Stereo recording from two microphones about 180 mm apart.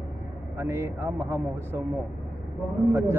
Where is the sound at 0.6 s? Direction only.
15° right (ahead or behind).